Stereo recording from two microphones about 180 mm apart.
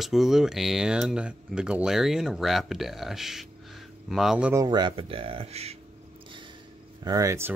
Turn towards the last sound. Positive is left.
turn(degrees=-15)  # may be behind; listen again after turning